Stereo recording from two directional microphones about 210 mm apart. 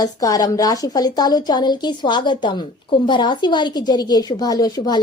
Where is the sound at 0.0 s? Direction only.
15° left (ahead or behind).